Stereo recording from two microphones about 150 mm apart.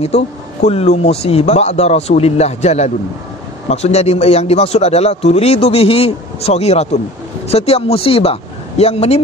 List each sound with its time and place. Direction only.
0.1 s speech: 45° left (ahead or behind)